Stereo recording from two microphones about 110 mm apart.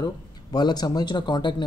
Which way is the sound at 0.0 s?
35° left (ahead or behind).